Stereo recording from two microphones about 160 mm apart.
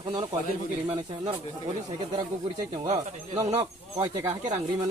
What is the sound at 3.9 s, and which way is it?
Speech, 25° right (ahead or behind).